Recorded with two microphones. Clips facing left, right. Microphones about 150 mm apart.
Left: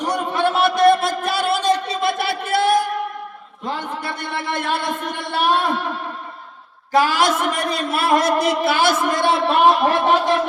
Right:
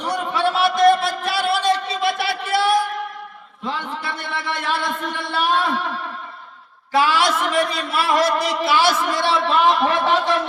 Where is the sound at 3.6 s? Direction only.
45° left (ahead or behind).